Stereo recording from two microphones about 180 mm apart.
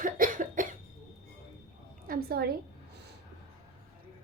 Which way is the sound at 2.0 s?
60° right (ahead or behind).